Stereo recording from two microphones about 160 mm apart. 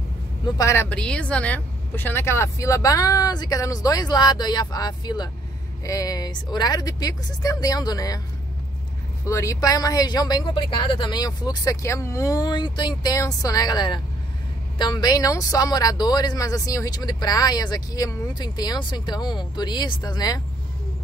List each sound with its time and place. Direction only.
0.6 s speech: 15° left (ahead or behind)
9.2 s speech: 20° left (ahead or behind)